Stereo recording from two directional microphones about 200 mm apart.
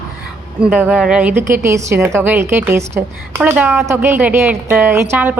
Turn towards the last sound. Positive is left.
turn(degrees=-10)  # may be behind; listen again after turning